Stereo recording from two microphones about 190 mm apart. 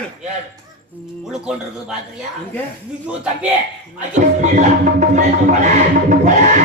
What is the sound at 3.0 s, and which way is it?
Speech, 5° right (ahead or behind).